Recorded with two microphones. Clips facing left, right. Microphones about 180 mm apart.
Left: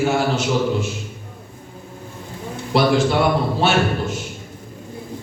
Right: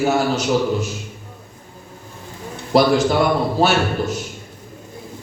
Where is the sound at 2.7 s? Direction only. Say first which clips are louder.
Right 2 dB; 40° right (ahead or behind).